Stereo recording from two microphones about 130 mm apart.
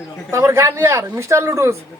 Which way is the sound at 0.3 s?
20° right (ahead or behind).